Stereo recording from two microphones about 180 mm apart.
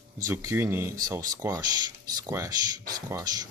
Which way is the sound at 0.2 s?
15° right (ahead or behind).